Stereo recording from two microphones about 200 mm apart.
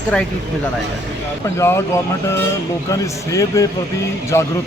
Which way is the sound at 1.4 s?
15° left (ahead or behind).